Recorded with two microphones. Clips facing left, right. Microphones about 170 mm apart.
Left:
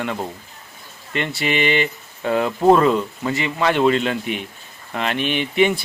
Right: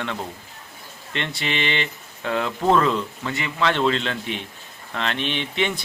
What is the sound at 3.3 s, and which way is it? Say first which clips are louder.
Speech: left 7 dB; 25° left (ahead or behind).